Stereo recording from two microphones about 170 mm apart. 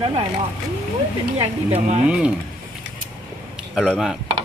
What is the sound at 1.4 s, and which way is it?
Speech, 40° right (ahead or behind).